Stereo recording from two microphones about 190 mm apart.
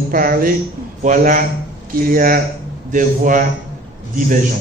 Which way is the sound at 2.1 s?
50° right (ahead or behind).